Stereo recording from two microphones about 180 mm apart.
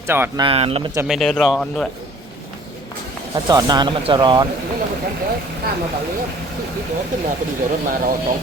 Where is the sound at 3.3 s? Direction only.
20° right (ahead or behind).